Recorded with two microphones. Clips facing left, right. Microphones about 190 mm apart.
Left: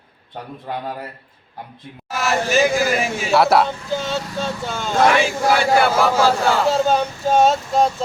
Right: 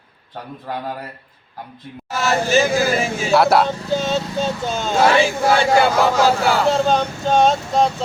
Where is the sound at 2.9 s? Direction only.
30° right (ahead or behind).